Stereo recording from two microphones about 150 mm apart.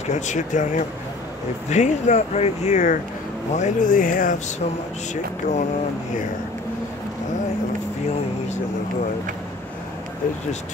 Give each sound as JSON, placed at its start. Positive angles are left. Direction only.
{"t": 0.0, "sound": "speech", "side_deg": 50}
{"t": 5.1, "sound": "speech", "side_deg": 50}